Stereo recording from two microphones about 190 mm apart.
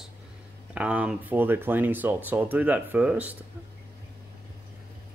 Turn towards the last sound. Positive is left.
turn(degrees=-5)  # may be behind; listen again after turning